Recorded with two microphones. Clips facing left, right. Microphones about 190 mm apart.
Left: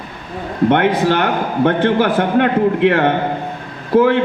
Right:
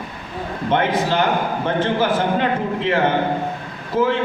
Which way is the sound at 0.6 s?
65° left (ahead or behind).